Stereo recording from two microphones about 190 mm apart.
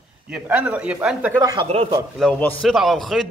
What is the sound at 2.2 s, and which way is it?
A man's voice, centre (ahead or behind).